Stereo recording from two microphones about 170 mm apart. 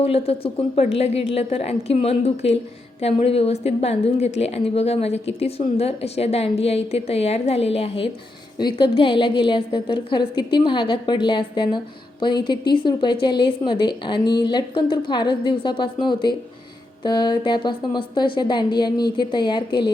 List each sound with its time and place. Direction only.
0.0 s a woman's voice: 35° left (ahead or behind)